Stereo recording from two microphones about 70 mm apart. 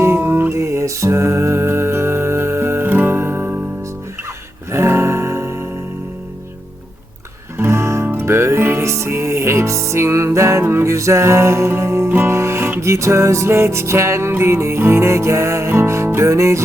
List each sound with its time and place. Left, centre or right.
0.0 s music: right
0.6 s music: right
4.7 s music: right
7.5 s music: right